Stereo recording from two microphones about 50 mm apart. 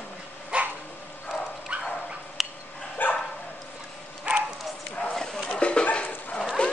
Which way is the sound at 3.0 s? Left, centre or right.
Left.